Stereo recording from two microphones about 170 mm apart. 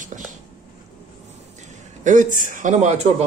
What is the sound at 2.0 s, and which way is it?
A man's voice, 50° right (ahead or behind).